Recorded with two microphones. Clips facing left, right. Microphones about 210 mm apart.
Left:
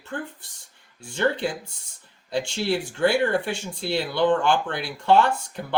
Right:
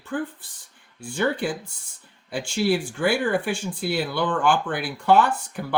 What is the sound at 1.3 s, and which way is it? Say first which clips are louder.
Speech: right 1 dB; 25° left (ahead or behind).